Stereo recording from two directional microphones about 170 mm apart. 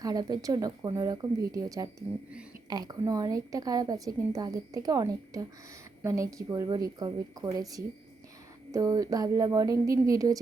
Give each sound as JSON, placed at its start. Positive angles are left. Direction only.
{"t": 0.0, "sound": "a woman's voice", "side_deg": -20}